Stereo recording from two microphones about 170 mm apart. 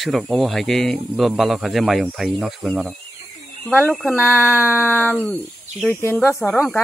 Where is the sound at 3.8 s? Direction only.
10° left (ahead or behind).